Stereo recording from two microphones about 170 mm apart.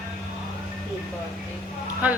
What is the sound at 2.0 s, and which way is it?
Speech, 10° right (ahead or behind).